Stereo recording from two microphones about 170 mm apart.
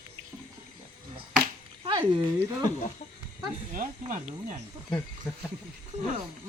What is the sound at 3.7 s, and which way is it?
Speech, 50° right (ahead or behind).